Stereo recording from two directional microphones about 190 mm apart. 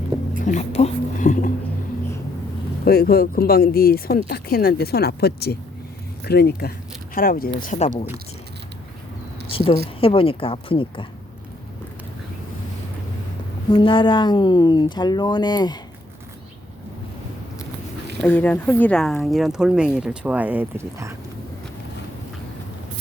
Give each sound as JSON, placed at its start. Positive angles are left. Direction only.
{"t": 0.4, "sound": "a sound", "side_deg": 35}
{"t": 2.8, "sound": "speech", "side_deg": 55}
{"t": 9.5, "sound": "a woman's voice", "side_deg": 30}
{"t": 13.7, "sound": "speech", "side_deg": 25}
{"t": 18.2, "sound": "speech", "side_deg": 10}